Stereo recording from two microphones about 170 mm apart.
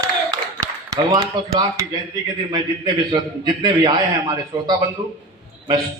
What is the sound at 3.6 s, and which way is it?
A man's voice, 25° right (ahead or behind).